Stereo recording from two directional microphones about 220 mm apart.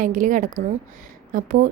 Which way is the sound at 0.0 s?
35° right (ahead or behind).